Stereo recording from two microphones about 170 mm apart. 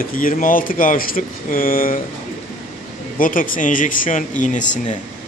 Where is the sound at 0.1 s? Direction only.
55° left (ahead or behind).